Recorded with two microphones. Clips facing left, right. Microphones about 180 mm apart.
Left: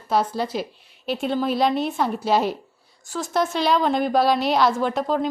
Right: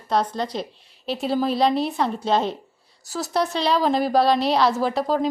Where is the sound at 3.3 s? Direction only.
Centre (ahead or behind).